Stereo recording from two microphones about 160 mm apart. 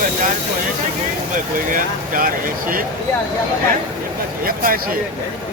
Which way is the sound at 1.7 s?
60° right (ahead or behind).